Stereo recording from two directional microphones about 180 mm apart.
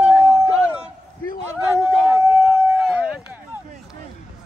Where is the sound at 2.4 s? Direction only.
Centre (ahead or behind).